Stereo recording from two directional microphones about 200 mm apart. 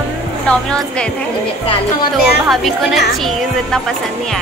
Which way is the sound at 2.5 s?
Centre (ahead or behind).